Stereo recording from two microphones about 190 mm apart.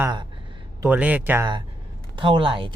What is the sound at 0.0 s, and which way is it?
Speech, 25° right (ahead or behind).